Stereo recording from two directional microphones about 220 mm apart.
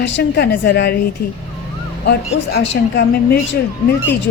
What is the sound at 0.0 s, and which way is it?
A woman's voice, 50° left (ahead or behind).